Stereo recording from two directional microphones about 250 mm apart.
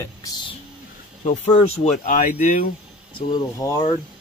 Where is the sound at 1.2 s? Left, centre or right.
Left.